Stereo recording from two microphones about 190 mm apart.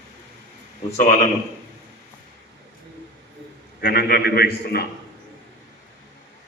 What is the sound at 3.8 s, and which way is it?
A man's voice, 55° left (ahead or behind).